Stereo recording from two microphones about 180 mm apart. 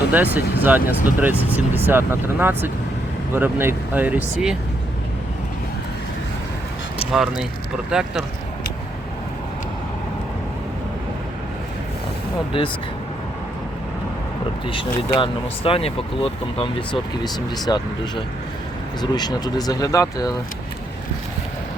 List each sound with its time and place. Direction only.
0.1 s speech: 10° right (ahead or behind)
7.1 s speech: 5° right (ahead or behind)
12.5 s speech: 30° left (ahead or behind)
14.7 s speech: 30° left (ahead or behind)
19.1 s speech: 25° left (ahead or behind)